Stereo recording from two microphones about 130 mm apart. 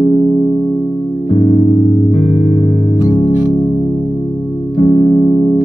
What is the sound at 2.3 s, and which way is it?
Music, 30° left (ahead or behind).